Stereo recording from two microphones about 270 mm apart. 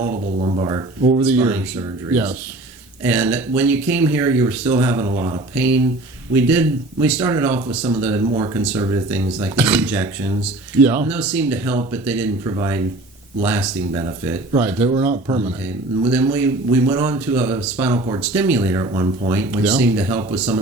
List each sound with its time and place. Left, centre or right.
0.1 s speech: right
1.2 s speech: centre
16.0 s speech: centre